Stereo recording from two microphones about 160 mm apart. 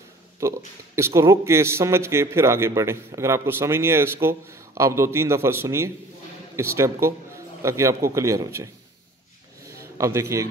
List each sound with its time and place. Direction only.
0.4 s a man's voice: 20° right (ahead or behind)
9.9 s a man's voice: 20° right (ahead or behind)